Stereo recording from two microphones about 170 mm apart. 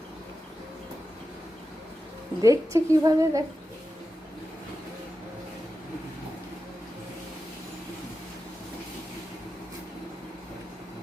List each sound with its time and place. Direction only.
2.4 s a woman's voice: 20° right (ahead or behind)